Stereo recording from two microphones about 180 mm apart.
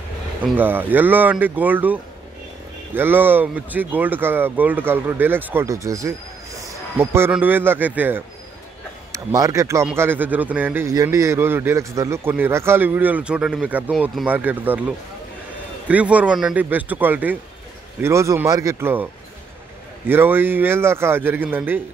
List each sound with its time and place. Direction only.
0.4 s a man's voice: 10° right (ahead or behind)
15.9 s a man's voice: 5° right (ahead or behind)
20.1 s a man's voice: 10° right (ahead or behind)